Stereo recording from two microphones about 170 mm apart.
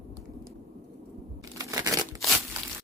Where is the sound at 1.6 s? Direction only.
20° right (ahead or behind).